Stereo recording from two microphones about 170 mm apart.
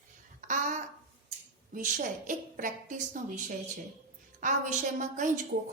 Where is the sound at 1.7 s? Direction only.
50° right (ahead or behind).